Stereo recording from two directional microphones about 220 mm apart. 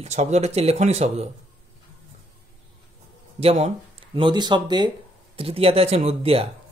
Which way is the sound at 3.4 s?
25° right (ahead or behind).